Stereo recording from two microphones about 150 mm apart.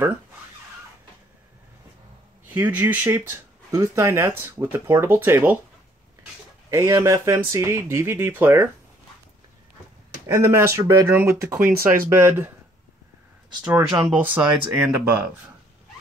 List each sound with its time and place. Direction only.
2.5 s speech: 15° right (ahead or behind)
6.7 s speech: 20° right (ahead or behind)
10.2 s speech: 20° right (ahead or behind)
11.6 s speech: 75° right (ahead or behind)
12.1 s speech: 15° right (ahead or behind)
13.7 s speech: 10° right (ahead or behind)